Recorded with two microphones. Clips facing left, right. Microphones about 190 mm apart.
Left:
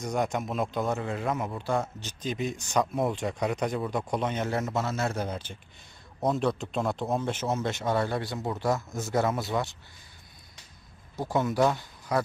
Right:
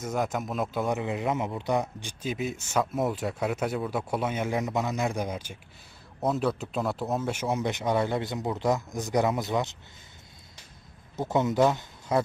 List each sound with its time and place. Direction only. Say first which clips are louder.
0.0 s a man's voice: even; 5° right (ahead or behind)
0.9 s a man's voice: right 2 dB; 20° right (ahead or behind)
11.2 s speech: right 2 dB; 20° right (ahead or behind)